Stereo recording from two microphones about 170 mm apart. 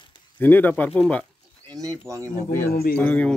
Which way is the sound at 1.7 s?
20° right (ahead or behind).